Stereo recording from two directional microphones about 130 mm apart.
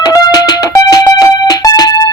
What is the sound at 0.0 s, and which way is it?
Music, 30° left (ahead or behind).